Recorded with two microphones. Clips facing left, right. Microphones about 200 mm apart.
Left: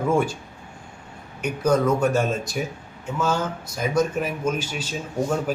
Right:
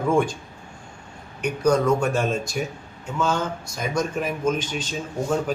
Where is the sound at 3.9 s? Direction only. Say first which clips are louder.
Left 2 dB; 5° left (ahead or behind).